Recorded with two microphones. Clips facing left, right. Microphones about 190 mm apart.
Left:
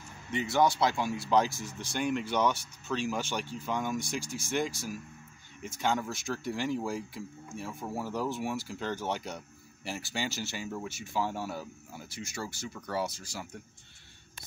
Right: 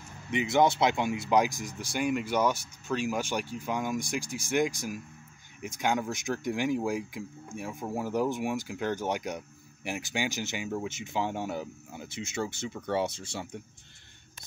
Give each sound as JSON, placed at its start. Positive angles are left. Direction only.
{"t": 0.3, "sound": "speech", "side_deg": -20}